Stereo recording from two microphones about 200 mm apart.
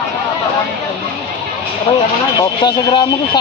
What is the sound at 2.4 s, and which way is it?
Speech, 20° left (ahead or behind).